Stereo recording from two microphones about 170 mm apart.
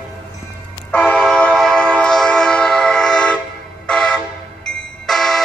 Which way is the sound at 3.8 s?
5° left (ahead or behind).